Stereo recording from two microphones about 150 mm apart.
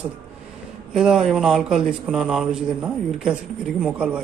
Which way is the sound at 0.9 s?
5° right (ahead or behind).